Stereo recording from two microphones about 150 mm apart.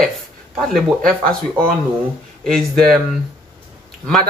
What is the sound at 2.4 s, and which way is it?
Speech, 5° left (ahead or behind).